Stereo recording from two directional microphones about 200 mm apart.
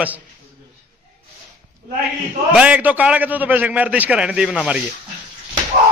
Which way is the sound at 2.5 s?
5° right (ahead or behind).